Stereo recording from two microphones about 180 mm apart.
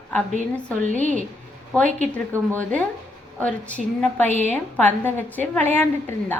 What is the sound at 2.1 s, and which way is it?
A woman's voice, 10° left (ahead or behind).